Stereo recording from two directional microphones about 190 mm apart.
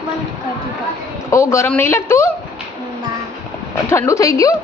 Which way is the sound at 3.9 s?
15° left (ahead or behind).